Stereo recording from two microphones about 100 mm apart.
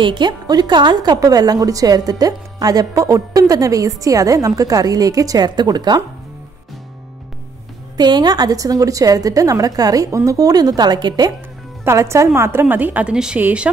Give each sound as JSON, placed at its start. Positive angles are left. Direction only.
{"t": 0.0, "sound": "a woman's voice", "side_deg": -50}
{"t": 8.0, "sound": "a woman's voice", "side_deg": -45}
{"t": 11.8, "sound": "a woman's voice", "side_deg": -30}